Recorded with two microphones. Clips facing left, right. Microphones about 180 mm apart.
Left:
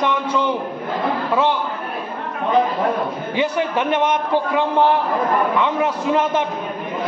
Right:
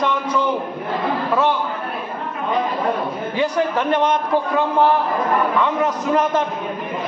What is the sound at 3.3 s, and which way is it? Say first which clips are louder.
Speech: right 1 dB; 20° left (ahead or behind).